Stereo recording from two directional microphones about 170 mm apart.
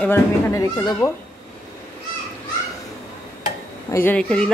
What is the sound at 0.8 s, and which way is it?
Speech, 25° left (ahead or behind).